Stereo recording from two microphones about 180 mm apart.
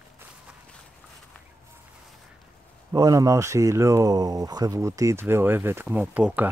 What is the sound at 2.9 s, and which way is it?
Speech, 20° right (ahead or behind).